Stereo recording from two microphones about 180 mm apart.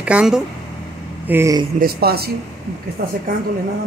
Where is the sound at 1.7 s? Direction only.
60° right (ahead or behind).